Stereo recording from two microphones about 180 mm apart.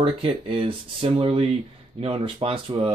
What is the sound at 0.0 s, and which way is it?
Speech, 30° right (ahead or behind).